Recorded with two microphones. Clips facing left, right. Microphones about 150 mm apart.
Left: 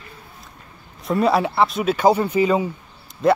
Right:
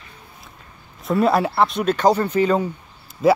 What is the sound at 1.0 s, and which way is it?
Speech, centre (ahead or behind).